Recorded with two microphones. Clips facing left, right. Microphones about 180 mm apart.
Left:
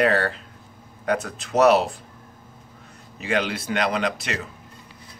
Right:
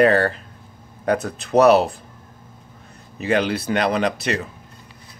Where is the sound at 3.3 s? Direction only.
40° right (ahead or behind).